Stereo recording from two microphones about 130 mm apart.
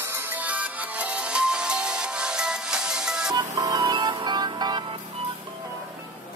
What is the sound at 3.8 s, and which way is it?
Music, 40° right (ahead or behind).